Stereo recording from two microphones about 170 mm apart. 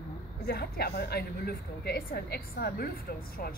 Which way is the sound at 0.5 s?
70° left (ahead or behind).